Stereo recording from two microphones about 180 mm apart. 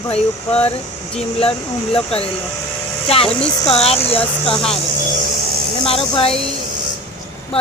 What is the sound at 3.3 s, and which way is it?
Speech, 5° left (ahead or behind).